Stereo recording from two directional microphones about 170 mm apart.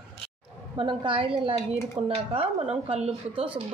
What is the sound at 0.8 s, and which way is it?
A woman's voice, 30° right (ahead or behind).